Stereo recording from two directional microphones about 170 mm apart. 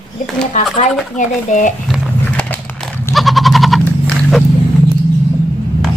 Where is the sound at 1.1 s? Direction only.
50° left (ahead or behind).